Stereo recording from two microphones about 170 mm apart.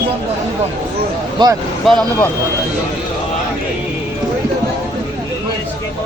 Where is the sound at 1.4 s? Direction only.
25° right (ahead or behind).